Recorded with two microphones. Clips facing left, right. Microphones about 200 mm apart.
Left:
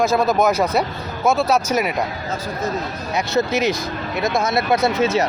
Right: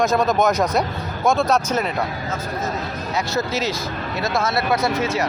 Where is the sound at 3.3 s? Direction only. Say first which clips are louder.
Left 7 dB; 15° left (ahead or behind).